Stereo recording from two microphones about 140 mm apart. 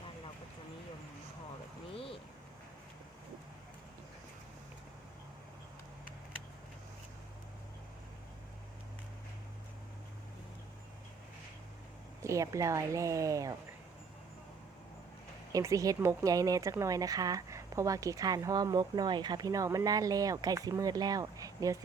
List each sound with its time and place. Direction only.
12.2 s speech: 20° right (ahead or behind)
15.5 s speech: 25° right (ahead or behind)